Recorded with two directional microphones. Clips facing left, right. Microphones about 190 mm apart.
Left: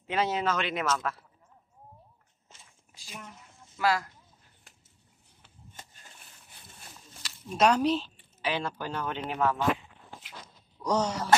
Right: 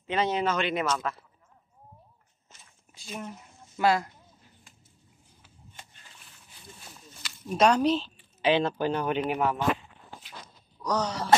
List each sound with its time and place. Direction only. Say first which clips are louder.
0.0 s speech: right 2 dB; 5° left (ahead or behind)
3.0 s speech: right 8 dB; 25° right (ahead or behind)
7.4 s speech: right 2 dB; 5° left (ahead or behind)
8.4 s speech: right 8 dB; 20° right (ahead or behind)
10.8 s speech: left 1 dB; 25° left (ahead or behind)